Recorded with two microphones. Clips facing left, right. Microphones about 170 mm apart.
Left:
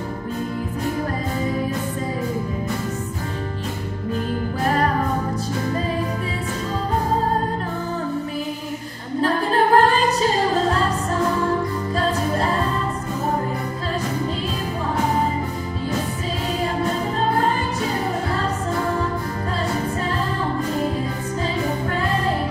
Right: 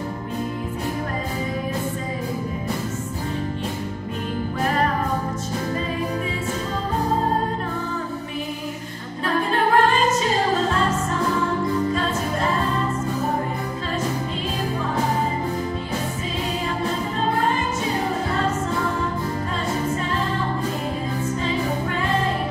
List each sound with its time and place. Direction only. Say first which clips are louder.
9.2 s music: left 2 dB; 35° left (ahead or behind)